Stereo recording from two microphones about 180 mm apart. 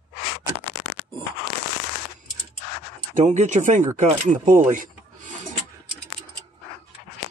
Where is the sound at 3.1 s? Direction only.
40° right (ahead or behind).